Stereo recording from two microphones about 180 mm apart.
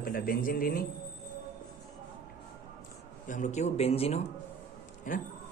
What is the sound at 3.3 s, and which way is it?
Speech, 40° left (ahead or behind).